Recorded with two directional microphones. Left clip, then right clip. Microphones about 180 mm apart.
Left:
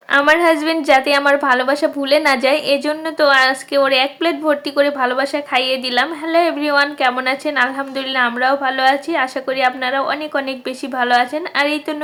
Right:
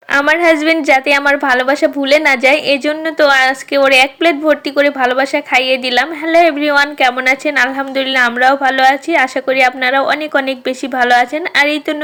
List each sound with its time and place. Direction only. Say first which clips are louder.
0.1 s a woman's voice: right 2 dB; 20° right (ahead or behind)